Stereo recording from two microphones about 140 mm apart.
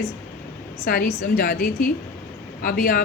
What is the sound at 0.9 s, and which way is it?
A woman's voice, 90° left.